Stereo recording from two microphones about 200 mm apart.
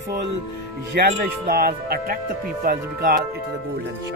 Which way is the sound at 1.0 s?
50° right (ahead or behind).